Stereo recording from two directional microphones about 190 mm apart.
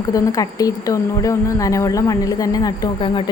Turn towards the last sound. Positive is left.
turn(degrees=25)  # may be behind; listen again after turning